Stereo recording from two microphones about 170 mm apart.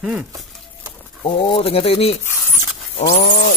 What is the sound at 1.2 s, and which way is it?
Speech, 30° left (ahead or behind).